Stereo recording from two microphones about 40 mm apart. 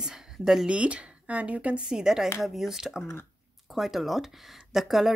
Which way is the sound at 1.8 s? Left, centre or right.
Centre.